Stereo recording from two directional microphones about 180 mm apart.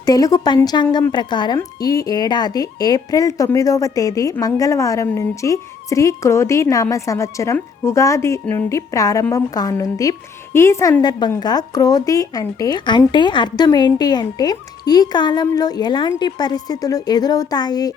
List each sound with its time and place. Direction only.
0.0 s a woman's voice: 20° left (ahead or behind)